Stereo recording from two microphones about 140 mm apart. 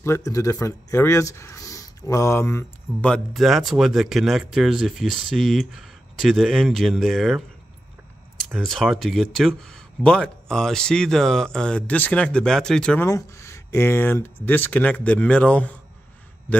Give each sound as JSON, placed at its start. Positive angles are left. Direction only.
{"t": 0.0, "sound": "speech", "side_deg": 20}
{"t": 3.1, "sound": "speech", "side_deg": 0}
{"t": 13.0, "sound": "a man's voice", "side_deg": 20}